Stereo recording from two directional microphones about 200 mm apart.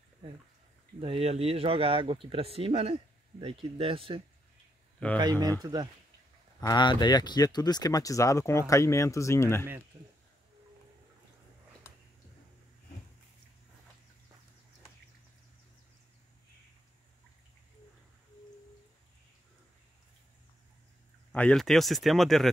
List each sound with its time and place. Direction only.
0.2 s speech: 30° right (ahead or behind)
5.0 s speech: 5° left (ahead or behind)
5.4 s speech: 20° right (ahead or behind)
6.6 s speech: 20° left (ahead or behind)
21.3 s speech: 5° left (ahead or behind)